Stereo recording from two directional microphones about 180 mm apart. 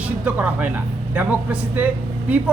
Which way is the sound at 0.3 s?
10° right (ahead or behind).